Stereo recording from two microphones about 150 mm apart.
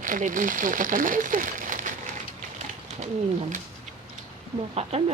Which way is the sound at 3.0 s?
55° right (ahead or behind).